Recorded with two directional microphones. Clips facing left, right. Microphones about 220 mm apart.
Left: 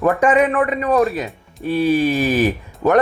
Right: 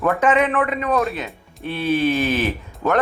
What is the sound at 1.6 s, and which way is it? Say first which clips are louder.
Music: left 8 dB; 40° left (ahead or behind).